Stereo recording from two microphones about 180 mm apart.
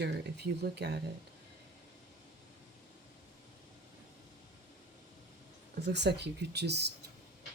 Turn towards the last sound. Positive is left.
turn(degrees=-70)  # may be behind; listen again after turning